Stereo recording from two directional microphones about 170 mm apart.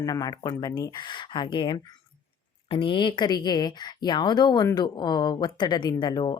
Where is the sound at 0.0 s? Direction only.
20° left (ahead or behind).